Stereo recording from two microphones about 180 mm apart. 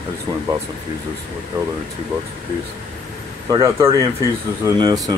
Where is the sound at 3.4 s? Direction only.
20° right (ahead or behind).